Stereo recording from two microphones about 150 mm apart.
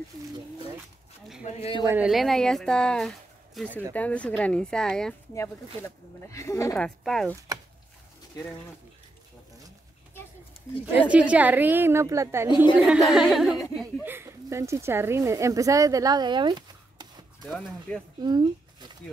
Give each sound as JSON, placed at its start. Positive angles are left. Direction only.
{"t": 1.4, "sound": "speech", "side_deg": 40}
{"t": 2.0, "sound": "speech", "side_deg": 0}
{"t": 5.3, "sound": "speech", "side_deg": 20}
{"t": 6.8, "sound": "speech", "side_deg": 5}
{"t": 11.0, "sound": "a woman's voice", "side_deg": -10}
{"t": 12.4, "sound": "speech", "side_deg": 30}
{"t": 12.8, "sound": "speech", "side_deg": -5}
{"t": 14.0, "sound": "speech", "side_deg": -15}
{"t": 17.5, "sound": "speech", "side_deg": 5}
{"t": 18.2, "sound": "speech", "side_deg": -30}